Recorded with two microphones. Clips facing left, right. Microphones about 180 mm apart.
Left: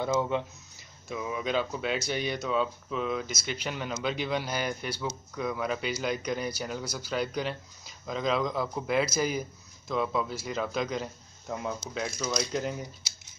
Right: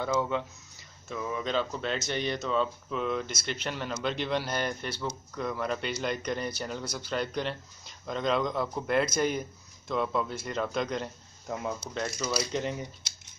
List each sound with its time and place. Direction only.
0.0 s speech: 15° left (ahead or behind)